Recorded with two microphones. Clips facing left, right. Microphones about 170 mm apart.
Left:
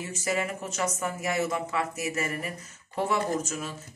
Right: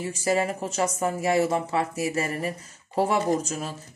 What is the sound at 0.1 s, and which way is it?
Speech, 35° right (ahead or behind).